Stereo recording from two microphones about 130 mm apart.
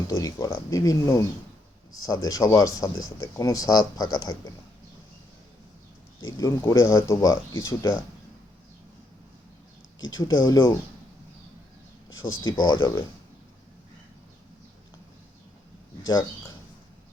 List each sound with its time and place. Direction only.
0.1 s speech: 30° left (ahead or behind)
6.3 s speech: 25° left (ahead or behind)
10.2 s speech: 25° left (ahead or behind)
12.2 s speech: 30° left (ahead or behind)